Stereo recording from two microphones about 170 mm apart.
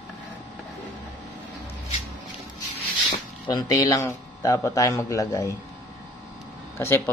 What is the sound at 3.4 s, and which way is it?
A man's voice, 20° left (ahead or behind).